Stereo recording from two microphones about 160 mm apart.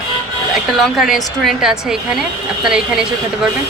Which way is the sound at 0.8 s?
Centre (ahead or behind).